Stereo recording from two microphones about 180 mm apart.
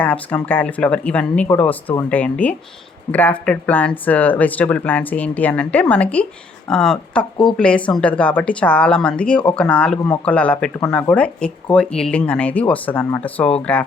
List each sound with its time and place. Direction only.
0.0 s speech: 10° left (ahead or behind)